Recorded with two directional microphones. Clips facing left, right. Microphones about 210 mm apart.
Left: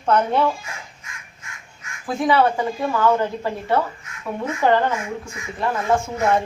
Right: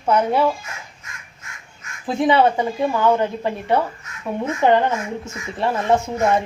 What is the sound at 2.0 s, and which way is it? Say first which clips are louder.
A woman's voice: right 2 dB; 25° right (ahead or behind).